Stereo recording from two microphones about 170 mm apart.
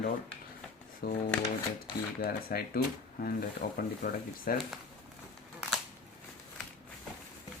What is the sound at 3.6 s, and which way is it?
Speech, 50° left (ahead or behind).